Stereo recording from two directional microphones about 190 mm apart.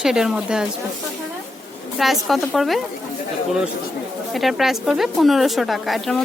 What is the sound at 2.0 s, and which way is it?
Speech, centre (ahead or behind).